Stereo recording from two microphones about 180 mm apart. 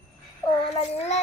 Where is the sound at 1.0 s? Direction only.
40° left (ahead or behind).